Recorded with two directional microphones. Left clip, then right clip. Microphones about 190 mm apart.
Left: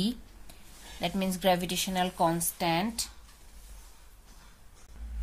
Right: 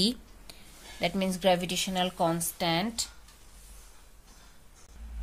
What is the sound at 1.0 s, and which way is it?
A woman's voice, 20° right (ahead or behind).